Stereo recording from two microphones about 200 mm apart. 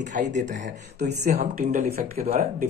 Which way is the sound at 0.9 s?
55° right (ahead or behind).